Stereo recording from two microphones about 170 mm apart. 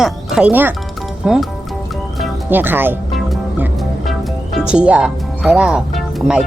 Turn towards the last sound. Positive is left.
turn(degrees=-5)  # may be behind; listen again after turning